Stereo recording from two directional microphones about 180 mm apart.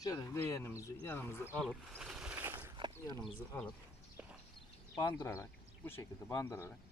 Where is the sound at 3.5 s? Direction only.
10° left (ahead or behind).